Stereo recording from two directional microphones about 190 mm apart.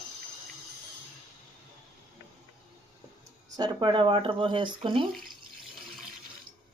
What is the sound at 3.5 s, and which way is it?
Speech, 25° right (ahead or behind).